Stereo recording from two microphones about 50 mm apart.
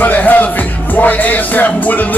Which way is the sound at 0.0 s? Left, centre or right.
Left.